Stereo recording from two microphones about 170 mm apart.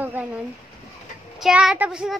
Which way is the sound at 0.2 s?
10° right (ahead or behind).